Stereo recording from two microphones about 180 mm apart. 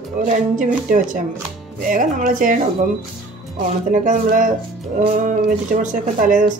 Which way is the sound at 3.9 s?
45° right (ahead or behind).